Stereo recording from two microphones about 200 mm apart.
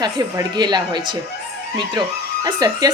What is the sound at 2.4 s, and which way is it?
Speech, 20° right (ahead or behind).